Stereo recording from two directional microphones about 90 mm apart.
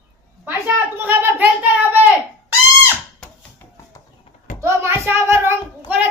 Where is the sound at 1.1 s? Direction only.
20° right (ahead or behind).